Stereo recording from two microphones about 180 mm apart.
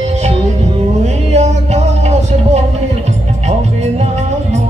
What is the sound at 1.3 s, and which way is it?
Music, 40° right (ahead or behind).